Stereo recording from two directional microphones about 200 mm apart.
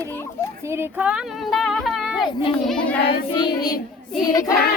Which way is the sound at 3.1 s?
20° left (ahead or behind).